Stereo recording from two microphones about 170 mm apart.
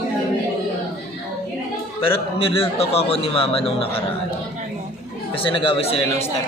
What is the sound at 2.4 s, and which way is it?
Speech, 35° left (ahead or behind).